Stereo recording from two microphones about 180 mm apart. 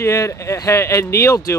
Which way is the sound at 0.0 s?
15° left (ahead or behind).